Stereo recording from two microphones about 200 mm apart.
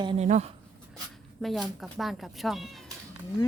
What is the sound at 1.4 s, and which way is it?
Speech, centre (ahead or behind).